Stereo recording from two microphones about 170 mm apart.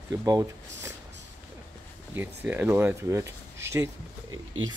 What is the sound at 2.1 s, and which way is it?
Speech, 10° right (ahead or behind).